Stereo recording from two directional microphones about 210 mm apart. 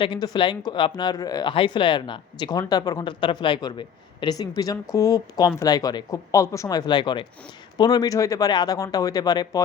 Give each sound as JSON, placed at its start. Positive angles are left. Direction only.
{"t": 0.0, "sound": "speech", "side_deg": 20}